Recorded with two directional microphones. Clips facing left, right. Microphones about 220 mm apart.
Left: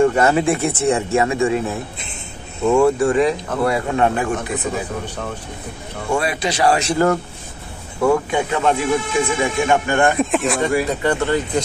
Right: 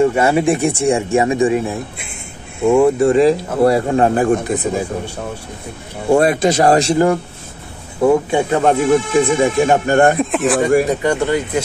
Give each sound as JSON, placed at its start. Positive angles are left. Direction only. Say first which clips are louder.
{"t": 0.0, "sound": "speech", "louder": "right 2 dB", "side_deg": -10}
{"t": 6.1, "sound": "speech", "louder": "right 8 dB", "side_deg": -50}
{"t": 8.0, "sound": "speech", "louder": "right 4 dB", "side_deg": -20}
{"t": 8.4, "sound": "speech", "louder": "right 4 dB", "side_deg": -35}
{"t": 10.1, "sound": "speech", "louder": "right 3 dB", "side_deg": 0}
{"t": 11.0, "sound": "speech", "louder": "right 2 dB", "side_deg": -15}